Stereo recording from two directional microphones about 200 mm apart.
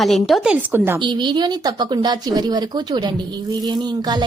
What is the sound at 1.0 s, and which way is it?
Speech, 25° right (ahead or behind).